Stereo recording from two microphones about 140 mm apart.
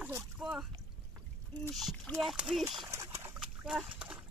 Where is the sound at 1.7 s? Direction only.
Centre (ahead or behind).